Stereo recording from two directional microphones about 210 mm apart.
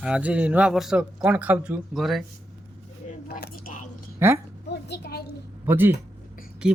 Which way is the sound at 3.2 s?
45° left (ahead or behind).